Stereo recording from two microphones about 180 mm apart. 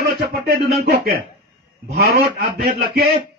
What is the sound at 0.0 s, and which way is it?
A man's voice, 65° right (ahead or behind).